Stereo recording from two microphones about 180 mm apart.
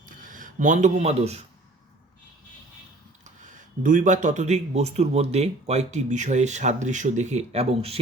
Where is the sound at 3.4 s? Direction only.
45° right (ahead or behind).